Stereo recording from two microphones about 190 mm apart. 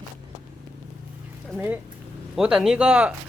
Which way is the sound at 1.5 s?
10° right (ahead or behind).